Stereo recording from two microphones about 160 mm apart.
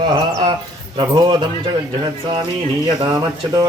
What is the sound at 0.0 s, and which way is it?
Speech, 25° right (ahead or behind).